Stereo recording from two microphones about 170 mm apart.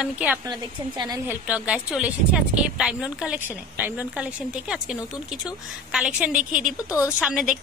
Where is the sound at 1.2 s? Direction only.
10° right (ahead or behind).